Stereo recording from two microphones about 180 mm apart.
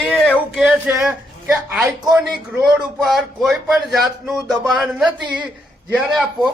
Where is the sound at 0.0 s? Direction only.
5° left (ahead or behind).